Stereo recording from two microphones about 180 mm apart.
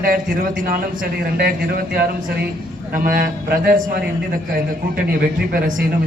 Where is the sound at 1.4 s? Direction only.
55° right (ahead or behind).